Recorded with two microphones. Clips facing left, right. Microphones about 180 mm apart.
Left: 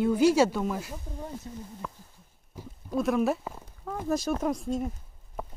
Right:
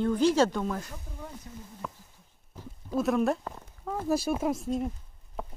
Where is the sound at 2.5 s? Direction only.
10° left (ahead or behind).